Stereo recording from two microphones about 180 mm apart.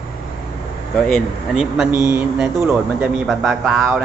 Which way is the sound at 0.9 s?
5° left (ahead or behind).